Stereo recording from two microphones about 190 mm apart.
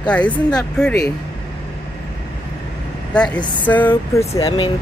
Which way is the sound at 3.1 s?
5° left (ahead or behind).